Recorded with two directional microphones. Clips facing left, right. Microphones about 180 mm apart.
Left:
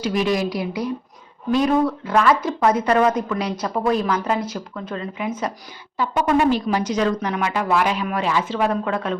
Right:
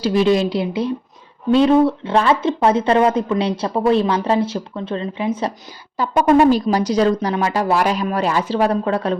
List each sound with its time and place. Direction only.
0.0 s a woman's voice: 30° right (ahead or behind)